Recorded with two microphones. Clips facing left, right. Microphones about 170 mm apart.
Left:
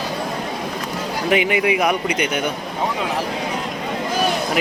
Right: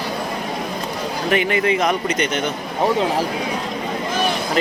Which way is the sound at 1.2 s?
15° left (ahead or behind).